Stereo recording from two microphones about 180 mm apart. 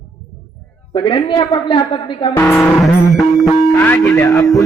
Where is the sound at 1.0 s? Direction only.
25° left (ahead or behind).